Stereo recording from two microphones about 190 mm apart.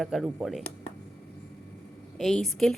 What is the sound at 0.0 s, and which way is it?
Speech, centre (ahead or behind).